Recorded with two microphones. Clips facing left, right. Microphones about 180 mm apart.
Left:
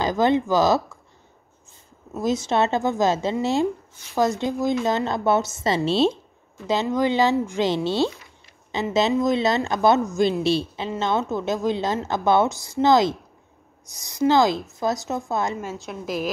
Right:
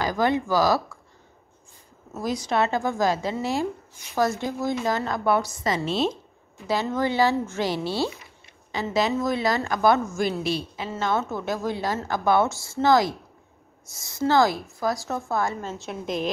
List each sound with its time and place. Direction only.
0.0 s a woman's voice: 25° left (ahead or behind)
2.1 s a woman's voice: 25° left (ahead or behind)
15.7 s a woman's voice: centre (ahead or behind)